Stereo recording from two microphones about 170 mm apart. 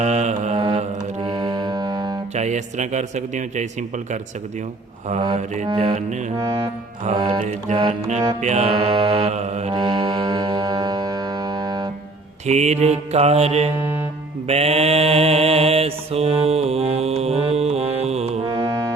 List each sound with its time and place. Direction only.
0.0 s mantra: 45° right (ahead or behind)
1.2 s music: 20° right (ahead or behind)
2.3 s a man's voice: 45° right (ahead or behind)
5.7 s a man's voice: 40° right (ahead or behind)
6.3 s music: 20° right (ahead or behind)
7.2 s mantra: 30° right (ahead or behind)
7.4 s a man's voice: 45° right (ahead or behind)
7.9 s mantra: 40° right (ahead or behind)
9.7 s music: 25° right (ahead or behind)
12.5 s mantra: 40° right (ahead or behind)
18.4 s music: 20° right (ahead or behind)